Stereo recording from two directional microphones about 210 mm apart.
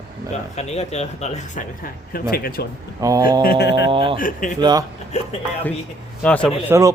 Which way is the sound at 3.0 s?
15° right (ahead or behind).